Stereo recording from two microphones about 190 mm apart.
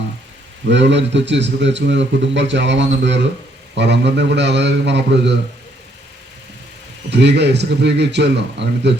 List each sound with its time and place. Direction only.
0.7 s a man's voice: 70° right (ahead or behind)
7.1 s a man's voice: 65° right (ahead or behind)